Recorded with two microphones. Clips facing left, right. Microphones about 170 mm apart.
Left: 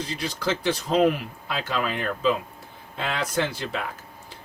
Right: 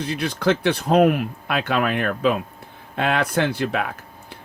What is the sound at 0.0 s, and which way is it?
Speech, 60° right (ahead or behind).